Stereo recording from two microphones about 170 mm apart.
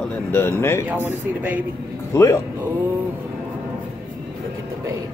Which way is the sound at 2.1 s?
15° left (ahead or behind).